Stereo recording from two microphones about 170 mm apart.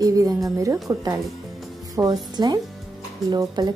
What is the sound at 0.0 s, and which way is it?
Speech, 20° right (ahead or behind).